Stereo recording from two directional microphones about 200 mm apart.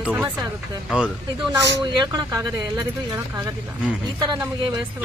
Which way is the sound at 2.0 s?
20° right (ahead or behind).